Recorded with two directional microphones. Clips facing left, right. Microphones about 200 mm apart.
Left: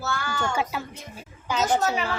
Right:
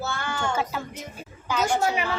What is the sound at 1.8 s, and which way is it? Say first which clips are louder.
Speech: right 1 dB; 10° right (ahead or behind).